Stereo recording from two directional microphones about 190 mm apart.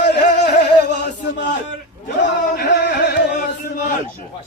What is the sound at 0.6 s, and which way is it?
Chant, 60° left (ahead or behind).